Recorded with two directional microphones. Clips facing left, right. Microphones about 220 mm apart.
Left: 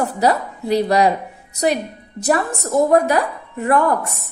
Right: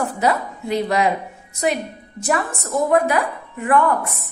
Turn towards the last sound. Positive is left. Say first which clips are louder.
# left 1 dB
turn(degrees=35)  # may be behind; listen again after turning